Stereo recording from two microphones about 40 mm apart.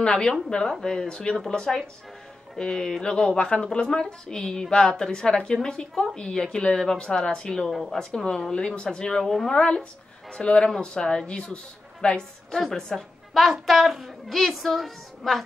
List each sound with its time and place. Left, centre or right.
0.0 s a woman's voice: centre
9.2 s a woman's voice: centre
9.5 s a woman's voice: centre